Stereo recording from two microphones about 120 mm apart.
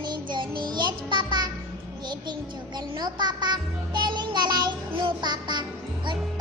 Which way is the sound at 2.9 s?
35° right (ahead or behind).